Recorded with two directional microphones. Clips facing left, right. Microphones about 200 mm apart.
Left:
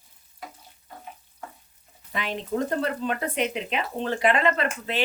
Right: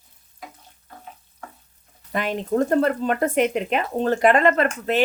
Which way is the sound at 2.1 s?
45° right (ahead or behind).